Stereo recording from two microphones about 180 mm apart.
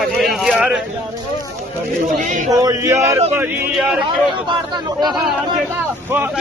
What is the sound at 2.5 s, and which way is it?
Speech, 20° right (ahead or behind).